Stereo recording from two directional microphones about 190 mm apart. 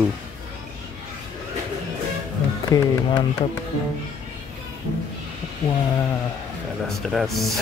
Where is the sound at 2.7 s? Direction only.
15° left (ahead or behind).